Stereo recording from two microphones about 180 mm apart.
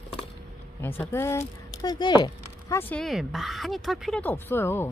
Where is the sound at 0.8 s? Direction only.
10° left (ahead or behind).